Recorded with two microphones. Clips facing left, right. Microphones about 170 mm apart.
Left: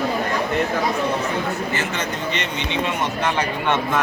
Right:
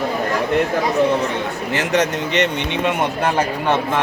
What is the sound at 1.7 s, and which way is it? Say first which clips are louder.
Speech: right 7 dB; 80° right.